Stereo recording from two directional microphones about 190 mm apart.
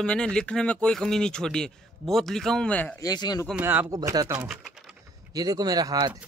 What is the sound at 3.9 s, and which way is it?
Speech, 20° right (ahead or behind).